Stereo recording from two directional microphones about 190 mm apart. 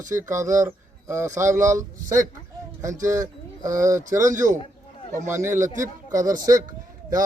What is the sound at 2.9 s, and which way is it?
Speech, 40° right (ahead or behind).